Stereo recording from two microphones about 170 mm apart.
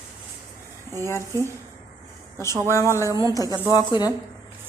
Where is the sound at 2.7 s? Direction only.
15° left (ahead or behind).